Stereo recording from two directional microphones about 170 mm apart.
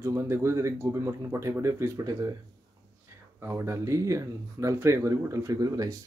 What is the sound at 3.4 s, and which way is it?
Speech, 15° right (ahead or behind).